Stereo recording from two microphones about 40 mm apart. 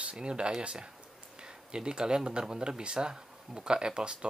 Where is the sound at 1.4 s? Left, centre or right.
Right.